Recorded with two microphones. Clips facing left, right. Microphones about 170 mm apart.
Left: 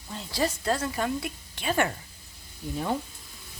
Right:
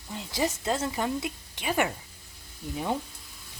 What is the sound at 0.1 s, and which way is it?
A woman's voice, 15° right (ahead or behind).